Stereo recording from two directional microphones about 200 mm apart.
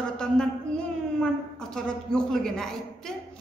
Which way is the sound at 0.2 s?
5° left (ahead or behind).